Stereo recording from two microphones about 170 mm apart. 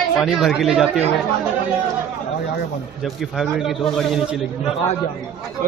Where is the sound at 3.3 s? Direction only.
Centre (ahead or behind).